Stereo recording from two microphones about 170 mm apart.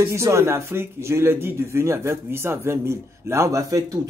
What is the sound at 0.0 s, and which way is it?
Speech, 15° right (ahead or behind).